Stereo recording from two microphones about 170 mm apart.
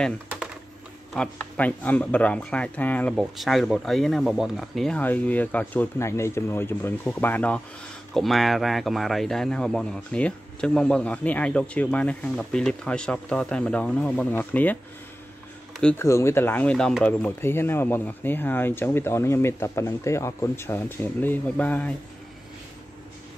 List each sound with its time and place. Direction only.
1.1 s speech: 5° left (ahead or behind)
15.8 s speech: 10° left (ahead or behind)